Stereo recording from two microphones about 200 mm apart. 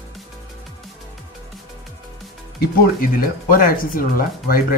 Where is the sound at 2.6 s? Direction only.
45° left (ahead or behind).